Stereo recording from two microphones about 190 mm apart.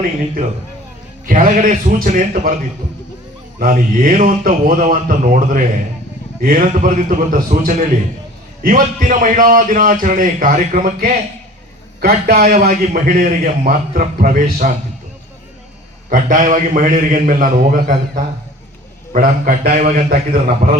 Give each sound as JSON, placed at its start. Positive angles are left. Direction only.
{"t": 1.3, "sound": "a man's voice", "side_deg": -45}
{"t": 3.6, "sound": "a man's voice", "side_deg": -45}
{"t": 11.9, "sound": "a man's voice", "side_deg": -55}
{"t": 16.0, "sound": "a man's voice", "side_deg": -45}